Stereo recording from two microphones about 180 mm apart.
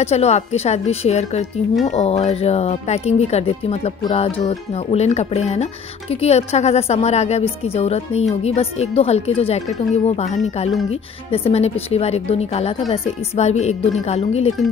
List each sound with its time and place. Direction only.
0.0 s speech: 35° left (ahead or behind)